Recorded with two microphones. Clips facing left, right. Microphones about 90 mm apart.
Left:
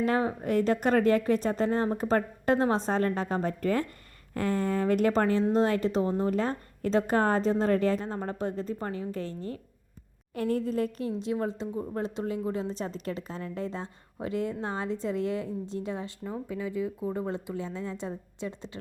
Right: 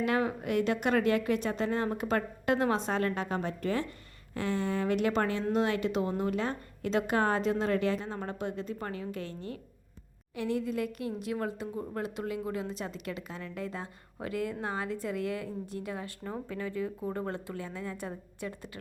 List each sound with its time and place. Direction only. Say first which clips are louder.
0.0 s a woman's voice: left 2 dB; 30° left (ahead or behind)
16.5 s a woman's voice: left 3 dB; 15° left (ahead or behind)